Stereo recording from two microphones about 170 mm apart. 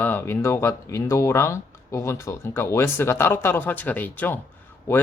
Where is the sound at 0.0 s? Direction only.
10° left (ahead or behind).